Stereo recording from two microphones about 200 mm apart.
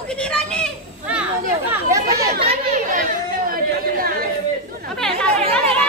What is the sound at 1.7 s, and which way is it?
Chatter, 15° right (ahead or behind).